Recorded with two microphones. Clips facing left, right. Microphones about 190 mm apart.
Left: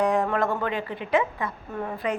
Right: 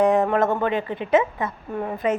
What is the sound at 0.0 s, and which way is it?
A woman's voice, 20° right (ahead or behind).